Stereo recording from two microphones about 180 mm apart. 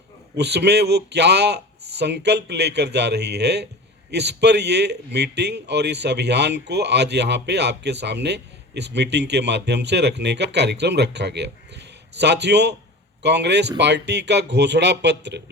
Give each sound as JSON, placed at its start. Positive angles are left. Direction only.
{"t": 0.3, "sound": "a man's voice", "side_deg": -65}